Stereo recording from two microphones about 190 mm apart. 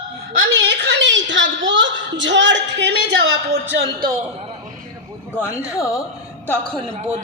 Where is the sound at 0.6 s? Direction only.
65° right (ahead or behind).